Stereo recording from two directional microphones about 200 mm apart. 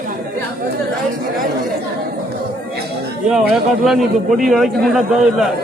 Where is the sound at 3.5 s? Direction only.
Centre (ahead or behind).